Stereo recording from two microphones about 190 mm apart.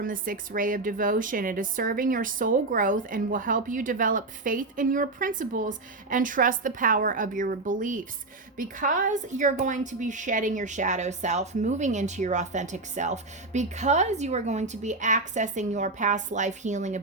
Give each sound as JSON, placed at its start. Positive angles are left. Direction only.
{"t": 0.0, "sound": "a woman's voice", "side_deg": -45}